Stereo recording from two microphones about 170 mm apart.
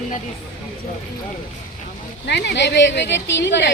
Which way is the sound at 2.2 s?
85° left.